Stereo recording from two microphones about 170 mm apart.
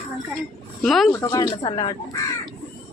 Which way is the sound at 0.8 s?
Centre (ahead or behind).